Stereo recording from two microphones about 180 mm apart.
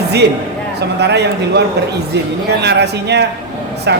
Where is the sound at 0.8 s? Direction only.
70° right (ahead or behind).